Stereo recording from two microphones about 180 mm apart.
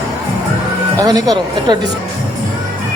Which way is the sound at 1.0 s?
20° right (ahead or behind).